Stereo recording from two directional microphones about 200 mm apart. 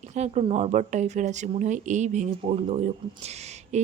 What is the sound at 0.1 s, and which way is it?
Speech, 35° right (ahead or behind).